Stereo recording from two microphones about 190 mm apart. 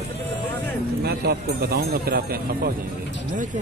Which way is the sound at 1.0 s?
55° right (ahead or behind).